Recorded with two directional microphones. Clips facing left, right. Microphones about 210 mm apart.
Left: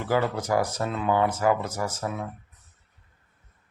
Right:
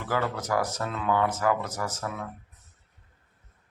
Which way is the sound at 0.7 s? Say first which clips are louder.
Left 2 dB; 20° left (ahead or behind).